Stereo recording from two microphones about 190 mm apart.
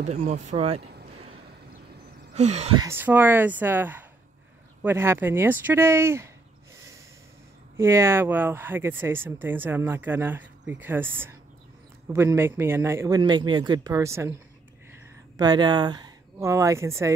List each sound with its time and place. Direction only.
0.0 s speech: 35° right (ahead or behind)
2.3 s speech: 35° right (ahead or behind)
2.8 s speech: 10° right (ahead or behind)
7.7 s speech: 15° right (ahead or behind)